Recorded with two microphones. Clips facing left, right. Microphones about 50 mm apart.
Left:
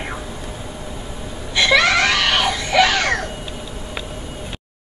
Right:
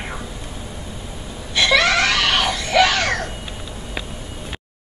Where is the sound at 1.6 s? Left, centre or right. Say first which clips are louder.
Left 1 dB; centre.